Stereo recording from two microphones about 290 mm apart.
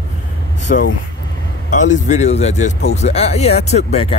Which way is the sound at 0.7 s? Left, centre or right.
Left.